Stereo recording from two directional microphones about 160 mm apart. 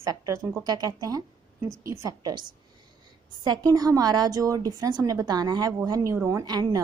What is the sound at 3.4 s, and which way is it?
A woman's voice, 25° right (ahead or behind).